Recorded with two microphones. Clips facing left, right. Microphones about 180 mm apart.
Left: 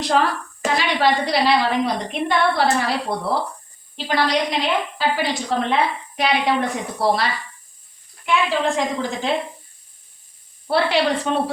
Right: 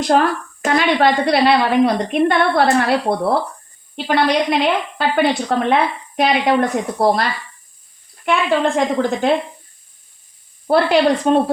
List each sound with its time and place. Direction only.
0.1 s a woman's voice: 50° right (ahead or behind)
10.7 s speech: 50° right (ahead or behind)